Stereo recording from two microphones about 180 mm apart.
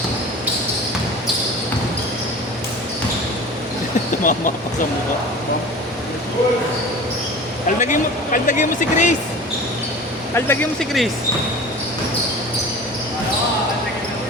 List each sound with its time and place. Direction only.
4.2 s speech: 50° left (ahead or behind)
7.8 s speech: 45° left (ahead or behind)
10.3 s speech: 10° left (ahead or behind)